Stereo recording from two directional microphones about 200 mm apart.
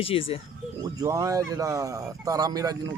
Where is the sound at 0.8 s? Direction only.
20° right (ahead or behind).